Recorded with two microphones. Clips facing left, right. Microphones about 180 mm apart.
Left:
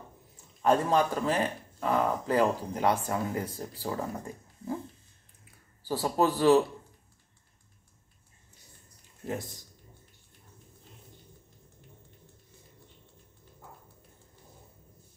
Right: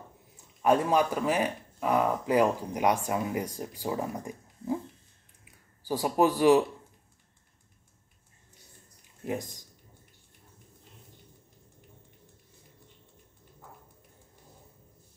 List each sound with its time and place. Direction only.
0.6 s speech: 10° right (ahead or behind)
5.4 s a sound: 15° right (ahead or behind)
9.2 s speech: 15° right (ahead or behind)